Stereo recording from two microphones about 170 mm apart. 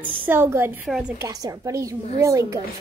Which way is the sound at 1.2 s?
20° right (ahead or behind).